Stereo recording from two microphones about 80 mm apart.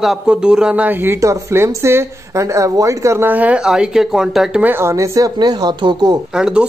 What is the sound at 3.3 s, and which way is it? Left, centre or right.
Speech, centre.